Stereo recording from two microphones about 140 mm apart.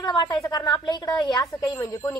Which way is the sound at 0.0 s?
30° left (ahead or behind).